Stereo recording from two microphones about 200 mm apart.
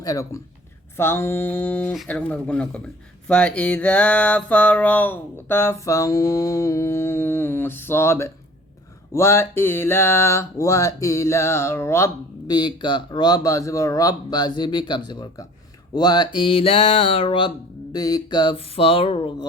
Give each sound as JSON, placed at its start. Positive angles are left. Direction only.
{"t": 0.0, "sound": "speech", "side_deg": 15}